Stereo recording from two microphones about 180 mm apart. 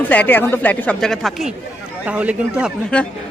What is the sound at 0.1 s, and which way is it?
Speech, 10° left (ahead or behind).